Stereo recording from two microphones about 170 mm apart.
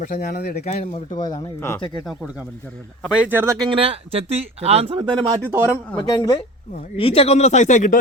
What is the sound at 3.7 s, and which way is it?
Speech, 35° right (ahead or behind).